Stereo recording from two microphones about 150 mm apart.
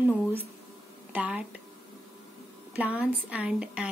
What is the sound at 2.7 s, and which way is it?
A woman's voice, 10° right (ahead or behind).